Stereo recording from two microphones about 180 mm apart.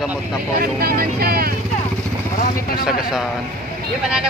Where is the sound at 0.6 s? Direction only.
55° right (ahead or behind).